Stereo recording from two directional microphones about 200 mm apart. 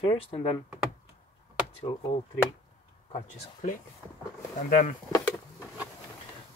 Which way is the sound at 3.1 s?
35° left (ahead or behind).